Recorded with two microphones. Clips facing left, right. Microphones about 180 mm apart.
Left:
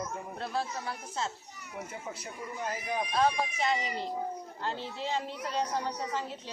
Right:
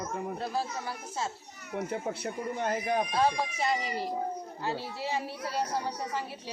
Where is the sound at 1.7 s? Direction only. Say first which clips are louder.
Right 8 dB; 55° right (ahead or behind).